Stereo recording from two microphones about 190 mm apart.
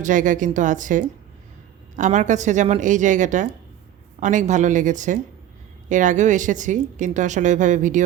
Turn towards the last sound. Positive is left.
turn(degrees=-40)  # may be behind; listen again after turning